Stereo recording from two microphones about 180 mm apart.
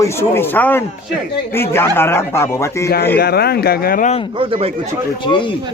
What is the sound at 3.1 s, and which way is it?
Speech, 60° left (ahead or behind).